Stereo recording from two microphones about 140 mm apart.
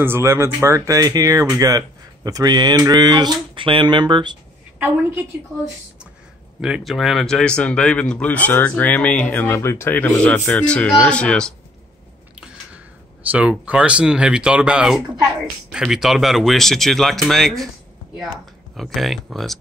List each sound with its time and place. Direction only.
0.0 s speech: 20° right (ahead or behind)
4.7 s a woman's voice: 15° right (ahead or behind)
6.6 s speech: centre (ahead or behind)
13.3 s speech: 10° right (ahead or behind)
18.8 s speech: centre (ahead or behind)